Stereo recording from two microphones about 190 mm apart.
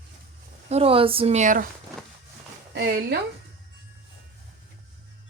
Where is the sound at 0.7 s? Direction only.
30° right (ahead or behind).